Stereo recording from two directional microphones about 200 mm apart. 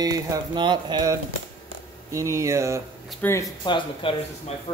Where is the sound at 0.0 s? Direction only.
20° right (ahead or behind).